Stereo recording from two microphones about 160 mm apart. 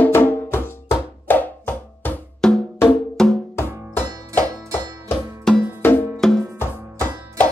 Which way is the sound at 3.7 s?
20° right (ahead or behind).